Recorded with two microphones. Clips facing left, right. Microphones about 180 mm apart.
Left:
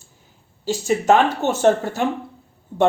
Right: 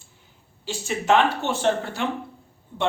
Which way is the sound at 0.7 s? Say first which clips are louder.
Left 5 dB; 40° left (ahead or behind).